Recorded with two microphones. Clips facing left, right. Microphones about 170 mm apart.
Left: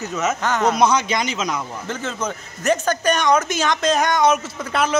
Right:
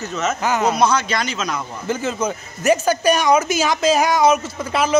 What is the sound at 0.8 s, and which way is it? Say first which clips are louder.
Speech: even; 15° left (ahead or behind).